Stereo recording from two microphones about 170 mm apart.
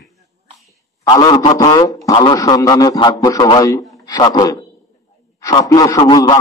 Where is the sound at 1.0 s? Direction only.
25° left (ahead or behind).